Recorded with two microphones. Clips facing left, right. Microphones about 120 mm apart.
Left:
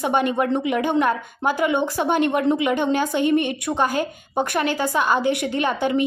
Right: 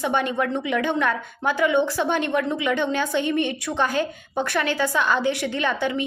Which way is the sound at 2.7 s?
50° left (ahead or behind).